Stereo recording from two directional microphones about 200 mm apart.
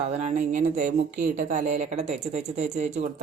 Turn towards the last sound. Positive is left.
turn(degrees=-35)  # may be behind; listen again after turning